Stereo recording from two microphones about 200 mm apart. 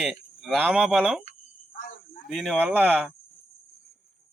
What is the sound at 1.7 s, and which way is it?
Cricket, 40° left (ahead or behind).